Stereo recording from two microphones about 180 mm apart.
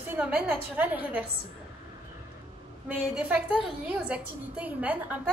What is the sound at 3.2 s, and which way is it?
A woman's voice, 5° right (ahead or behind).